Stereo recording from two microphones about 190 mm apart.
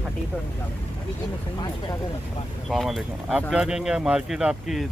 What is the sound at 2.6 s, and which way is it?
Speech, centre (ahead or behind).